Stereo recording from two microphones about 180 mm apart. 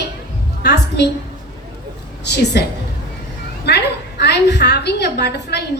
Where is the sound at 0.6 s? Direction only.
70° left (ahead or behind).